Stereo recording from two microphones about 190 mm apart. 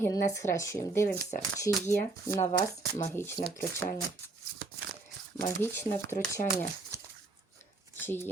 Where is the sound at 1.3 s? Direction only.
45° left (ahead or behind).